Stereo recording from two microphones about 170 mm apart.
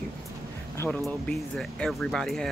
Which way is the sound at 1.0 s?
Centre (ahead or behind).